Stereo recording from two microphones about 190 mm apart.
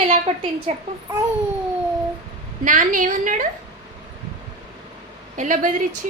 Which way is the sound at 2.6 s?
45° right (ahead or behind).